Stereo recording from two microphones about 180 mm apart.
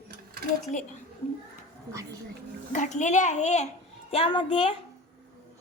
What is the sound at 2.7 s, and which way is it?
Speech, 45° left (ahead or behind).